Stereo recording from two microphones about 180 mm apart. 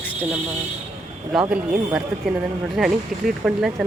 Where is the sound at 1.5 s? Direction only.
5° right (ahead or behind).